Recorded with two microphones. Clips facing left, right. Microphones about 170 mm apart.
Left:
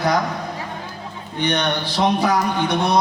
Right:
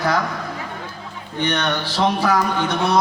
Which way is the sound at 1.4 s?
15° left (ahead or behind).